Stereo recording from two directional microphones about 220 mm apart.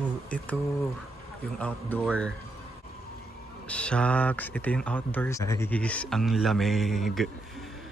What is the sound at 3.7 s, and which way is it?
Speech, 5° left (ahead or behind).